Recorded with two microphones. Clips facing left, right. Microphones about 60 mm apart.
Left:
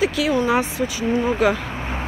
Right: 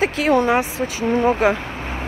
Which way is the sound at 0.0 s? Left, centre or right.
Right.